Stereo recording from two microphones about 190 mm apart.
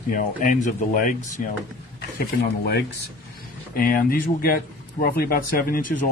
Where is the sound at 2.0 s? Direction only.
55° left (ahead or behind).